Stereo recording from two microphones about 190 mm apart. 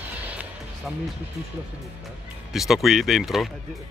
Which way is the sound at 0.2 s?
5° right (ahead or behind).